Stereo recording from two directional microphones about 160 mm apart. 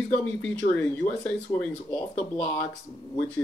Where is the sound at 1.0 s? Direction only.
35° left (ahead or behind).